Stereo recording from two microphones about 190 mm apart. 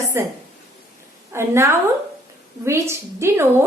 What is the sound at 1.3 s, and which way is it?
A woman's voice, 15° right (ahead or behind).